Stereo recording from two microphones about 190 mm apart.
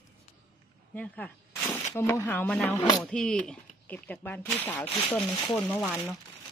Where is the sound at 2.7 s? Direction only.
20° left (ahead or behind).